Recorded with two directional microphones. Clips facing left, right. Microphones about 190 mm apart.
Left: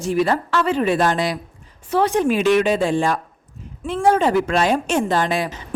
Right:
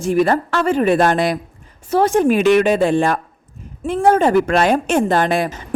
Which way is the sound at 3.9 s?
50° right (ahead or behind).